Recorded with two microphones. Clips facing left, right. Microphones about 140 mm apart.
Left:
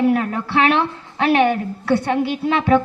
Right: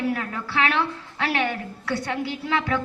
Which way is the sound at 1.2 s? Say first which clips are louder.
Left 10 dB; 25° left (ahead or behind).